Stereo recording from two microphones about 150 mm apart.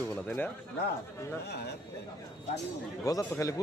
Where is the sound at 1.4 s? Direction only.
90° left.